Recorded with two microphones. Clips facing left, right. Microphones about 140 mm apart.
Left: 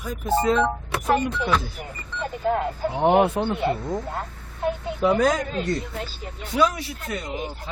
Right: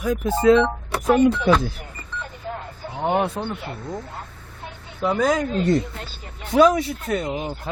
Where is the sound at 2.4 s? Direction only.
75° left (ahead or behind).